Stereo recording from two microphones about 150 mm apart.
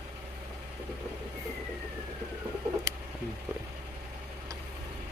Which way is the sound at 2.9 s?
20° right (ahead or behind).